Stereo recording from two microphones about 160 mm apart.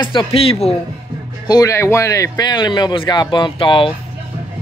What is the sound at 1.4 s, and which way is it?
Speech, 25° left (ahead or behind).